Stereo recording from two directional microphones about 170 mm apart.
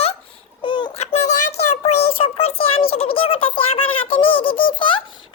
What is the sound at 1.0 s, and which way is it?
Child singing, 40° left (ahead or behind).